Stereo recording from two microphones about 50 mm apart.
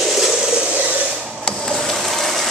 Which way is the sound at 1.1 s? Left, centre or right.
Centre.